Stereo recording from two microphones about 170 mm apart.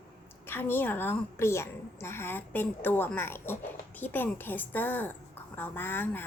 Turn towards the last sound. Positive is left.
turn(degrees=10)  # may be behind; listen again after turning